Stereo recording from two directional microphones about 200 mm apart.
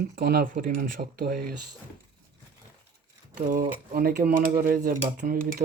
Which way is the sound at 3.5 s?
45° right (ahead or behind).